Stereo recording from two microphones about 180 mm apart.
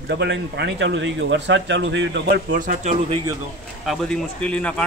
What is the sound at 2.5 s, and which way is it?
Speech, 45° right (ahead or behind).